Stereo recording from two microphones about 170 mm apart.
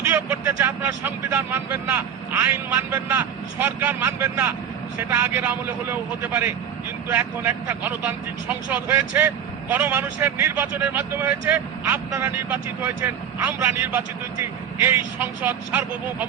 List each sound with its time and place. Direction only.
0.1 s speech: 15° right (ahead or behind)